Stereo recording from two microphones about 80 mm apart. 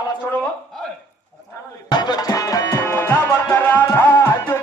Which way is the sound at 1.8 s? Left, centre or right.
Left.